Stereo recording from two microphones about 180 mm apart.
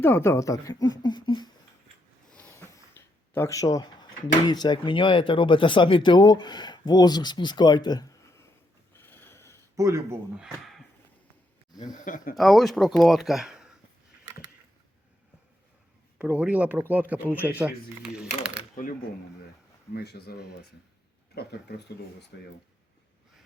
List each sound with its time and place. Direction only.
0.0 s speech: 15° left (ahead or behind)
2.3 s a sound: 10° left (ahead or behind)
4.4 s speech: 25° left (ahead or behind)
9.0 s a sound: 10° left (ahead or behind)
9.6 s a sound: 15° right (ahead or behind)
10.4 s a sound: centre (ahead or behind)
11.8 s speech: 20° left (ahead or behind)
12.0 s speech: 45° left (ahead or behind)
12.4 s speech: centre (ahead or behind)
16.1 s speech: 5° right (ahead or behind)
18.8 s speech: 45° left (ahead or behind)
19.9 s speech: 65° left (ahead or behind)